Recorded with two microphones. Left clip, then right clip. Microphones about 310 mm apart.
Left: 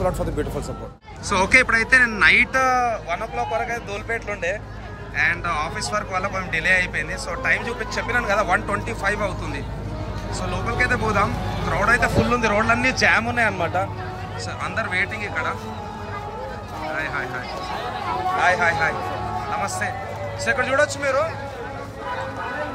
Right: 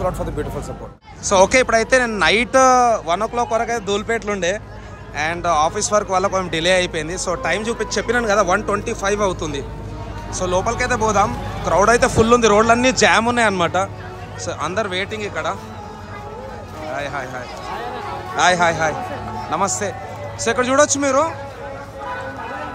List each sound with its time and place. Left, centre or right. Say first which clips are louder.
0.0 s speech: right 1 dB; centre
1.3 s a man's voice: right 3 dB; centre
16.9 s speech: right 1 dB; centre
18.4 s a man's voice: right 5 dB; centre